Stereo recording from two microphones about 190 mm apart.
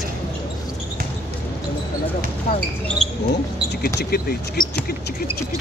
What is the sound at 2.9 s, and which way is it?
Speech, 5° left (ahead or behind).